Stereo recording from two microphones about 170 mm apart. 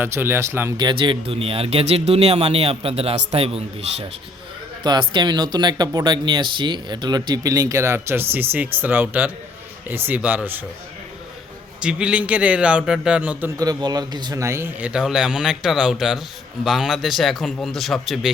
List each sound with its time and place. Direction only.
0.0 s a man's voice: 15° right (ahead or behind)
0.8 s speech: 25° right (ahead or behind)
4.8 s a man's voice: 25° right (ahead or behind); by 10.6 s 10° right (ahead or behind)
11.8 s a man's voice: 5° right (ahead or behind)
13.6 s a man's voice: 20° right (ahead or behind); by 18.3 s centre (ahead or behind)